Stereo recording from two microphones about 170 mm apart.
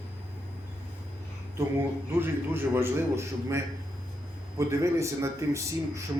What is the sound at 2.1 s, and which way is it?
A man's voice, 15° right (ahead or behind).